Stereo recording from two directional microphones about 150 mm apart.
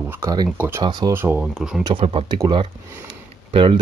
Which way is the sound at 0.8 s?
30° right (ahead or behind).